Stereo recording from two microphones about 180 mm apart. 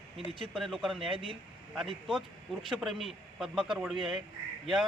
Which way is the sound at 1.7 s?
Centre (ahead or behind).